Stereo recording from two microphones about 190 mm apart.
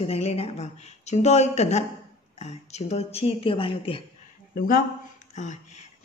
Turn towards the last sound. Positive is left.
turn(degrees=40)  # may be behind; listen again after turning